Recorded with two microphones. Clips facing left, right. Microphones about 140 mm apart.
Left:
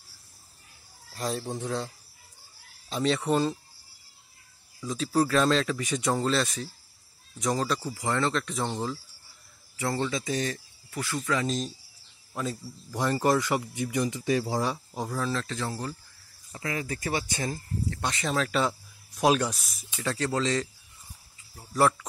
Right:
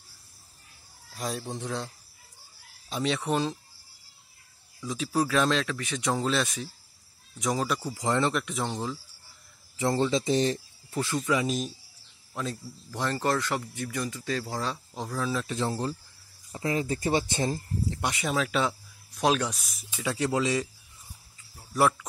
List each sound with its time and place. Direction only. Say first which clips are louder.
1.1 s speech: left 2 dB; centre (ahead or behind)
2.9 s speech: left 2 dB; 5° right (ahead or behind)
4.7 s speech: left 2 dB; 5° right (ahead or behind)
7.9 s speech: right 4 dB; 20° right (ahead or behind)
8.5 s speech: left 1 dB; centre (ahead or behind)
9.8 s speech: right 4 dB; 20° right (ahead or behind)
12.4 s speech: left 1 dB; 5° left (ahead or behind)
15.4 s speech: right 4 dB; 20° right (ahead or behind); by 20.2 s 5° right (ahead or behind)
20.2 s speech: right 1 dB; 15° right (ahead or behind)
21.7 s speech: left 1 dB; 5° right (ahead or behind)